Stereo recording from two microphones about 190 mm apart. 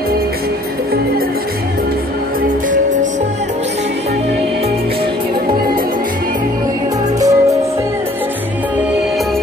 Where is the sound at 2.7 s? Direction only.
40° right (ahead or behind).